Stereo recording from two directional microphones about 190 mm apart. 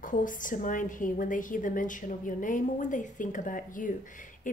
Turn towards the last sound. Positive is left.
turn(degrees=45)  # may be behind; listen again after turning